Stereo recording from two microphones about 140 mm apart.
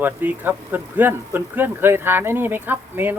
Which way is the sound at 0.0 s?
15° right (ahead or behind).